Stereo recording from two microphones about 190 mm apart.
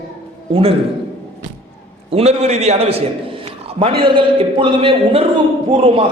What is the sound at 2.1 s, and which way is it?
A man's voice, 35° right (ahead or behind).